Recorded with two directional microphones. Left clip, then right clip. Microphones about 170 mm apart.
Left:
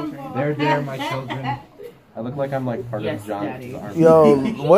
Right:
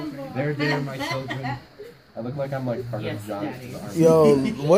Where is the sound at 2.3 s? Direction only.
Centre (ahead or behind).